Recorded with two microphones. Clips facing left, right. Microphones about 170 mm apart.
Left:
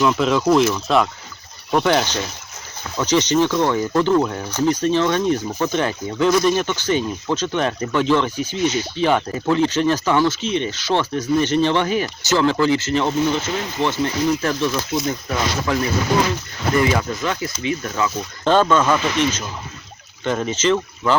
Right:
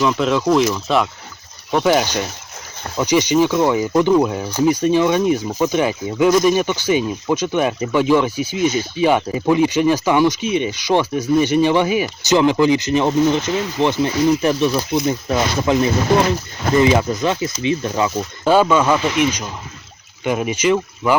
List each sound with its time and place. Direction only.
0.0 s speech: centre (ahead or behind); by 18.1 s 25° right (ahead or behind)
18.4 s speech: 10° right (ahead or behind)